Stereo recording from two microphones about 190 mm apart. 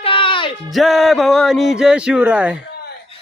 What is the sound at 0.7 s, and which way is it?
Speech, centre (ahead or behind).